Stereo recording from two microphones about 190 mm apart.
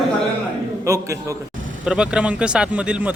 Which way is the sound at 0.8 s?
15° right (ahead or behind).